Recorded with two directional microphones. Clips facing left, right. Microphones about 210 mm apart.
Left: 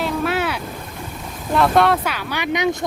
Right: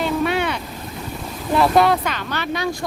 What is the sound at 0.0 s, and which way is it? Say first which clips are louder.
Boat: right 1 dB; centre (ahead or behind).